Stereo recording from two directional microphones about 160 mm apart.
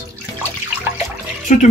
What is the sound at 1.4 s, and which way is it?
Speech, 50° left (ahead or behind).